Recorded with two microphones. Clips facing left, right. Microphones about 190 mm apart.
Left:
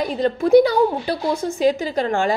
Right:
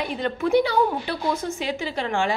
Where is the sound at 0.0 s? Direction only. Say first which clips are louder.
Left 5 dB; 40° left (ahead or behind).